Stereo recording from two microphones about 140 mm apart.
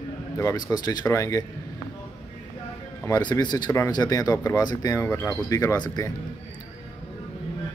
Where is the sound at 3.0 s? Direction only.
25° left (ahead or behind).